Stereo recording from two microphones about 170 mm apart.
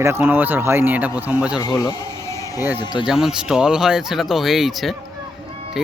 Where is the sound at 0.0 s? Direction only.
15° right (ahead or behind).